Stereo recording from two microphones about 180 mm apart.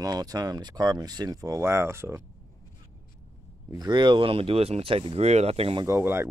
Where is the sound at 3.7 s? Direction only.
25° right (ahead or behind).